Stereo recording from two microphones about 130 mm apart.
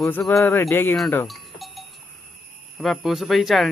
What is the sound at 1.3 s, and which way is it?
Livestock, centre (ahead or behind).